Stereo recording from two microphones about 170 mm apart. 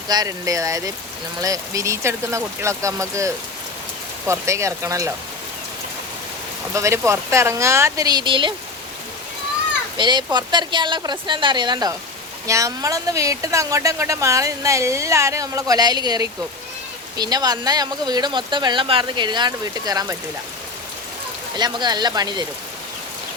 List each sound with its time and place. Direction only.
0.1 s speech: 20° right (ahead or behind)
6.7 s speech: 15° right (ahead or behind)
10.0 s speech: 25° right (ahead or behind)
21.5 s speech: 25° right (ahead or behind)